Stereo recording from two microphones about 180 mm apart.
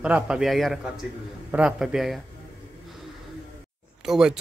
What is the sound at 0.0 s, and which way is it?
Speech, 5° right (ahead or behind).